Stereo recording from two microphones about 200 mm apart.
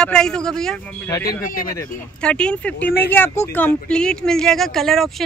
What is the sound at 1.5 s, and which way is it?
Speech, 45° left (ahead or behind).